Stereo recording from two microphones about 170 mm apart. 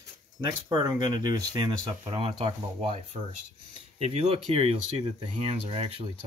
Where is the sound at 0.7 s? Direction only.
25° right (ahead or behind).